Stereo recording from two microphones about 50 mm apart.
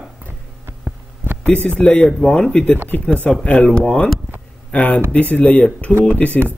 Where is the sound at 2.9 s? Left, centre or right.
Left.